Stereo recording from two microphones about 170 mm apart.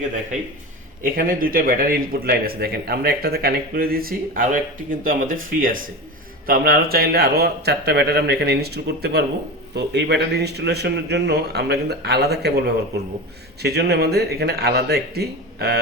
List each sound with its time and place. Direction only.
1.0 s a man's voice: 55° right (ahead or behind); by 15.8 s 70° right (ahead or behind)